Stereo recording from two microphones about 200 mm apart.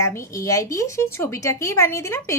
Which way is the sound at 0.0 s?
15° left (ahead or behind).